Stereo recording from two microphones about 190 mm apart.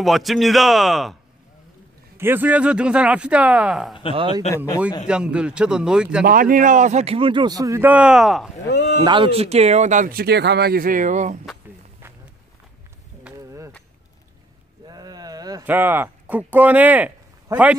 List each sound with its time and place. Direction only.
0.0 s a man's voice: centre (ahead or behind)
2.1 s speech: 10° right (ahead or behind)
4.1 s a man's voice: 25° right (ahead or behind)
5.0 s a man's voice: 5° right (ahead or behind)
6.2 s a man's voice: 50° right (ahead or behind); by 8.5 s centre (ahead or behind)
8.6 s speech: 60° left (ahead or behind)
9.0 s speech: 25° right (ahead or behind)
13.2 s a sound: 15° right (ahead or behind)
14.9 s a sound: 20° right (ahead or behind)
15.6 s speech: 10° right (ahead or behind)